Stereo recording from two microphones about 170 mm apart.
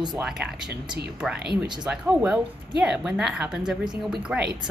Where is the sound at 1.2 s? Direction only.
5° right (ahead or behind).